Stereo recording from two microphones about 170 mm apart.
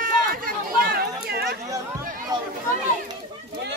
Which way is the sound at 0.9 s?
65° right (ahead or behind).